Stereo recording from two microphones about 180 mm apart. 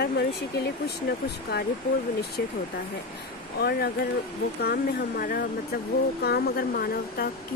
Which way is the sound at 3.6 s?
60° left (ahead or behind).